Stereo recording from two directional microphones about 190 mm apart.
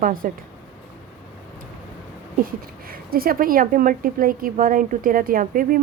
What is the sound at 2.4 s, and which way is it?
Speech, 50° right (ahead or behind).